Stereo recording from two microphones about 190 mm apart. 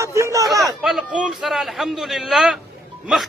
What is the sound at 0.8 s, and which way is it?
A man's voice, 5° right (ahead or behind).